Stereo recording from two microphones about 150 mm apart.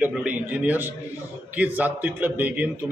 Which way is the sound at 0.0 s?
10° right (ahead or behind).